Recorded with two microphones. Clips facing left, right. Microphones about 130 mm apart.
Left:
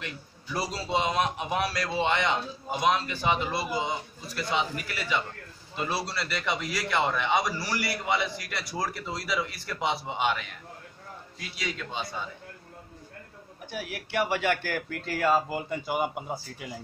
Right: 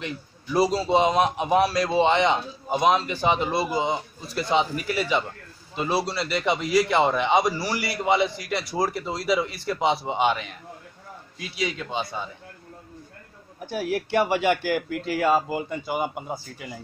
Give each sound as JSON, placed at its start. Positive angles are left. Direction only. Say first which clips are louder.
{"t": 0.0, "sound": "a man's voice", "louder": "right 6 dB", "side_deg": -25}
{"t": 13.7, "sound": "speech", "louder": "right 10 dB", "side_deg": -35}
{"t": 14.3, "sound": "speech", "louder": "right 5 dB", "side_deg": -20}